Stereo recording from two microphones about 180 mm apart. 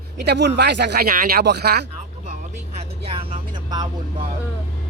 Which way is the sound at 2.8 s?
30° right (ahead or behind).